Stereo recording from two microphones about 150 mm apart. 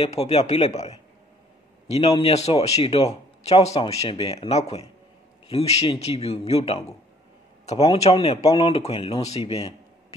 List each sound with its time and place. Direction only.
0.0 s a man's voice: 45° left (ahead or behind)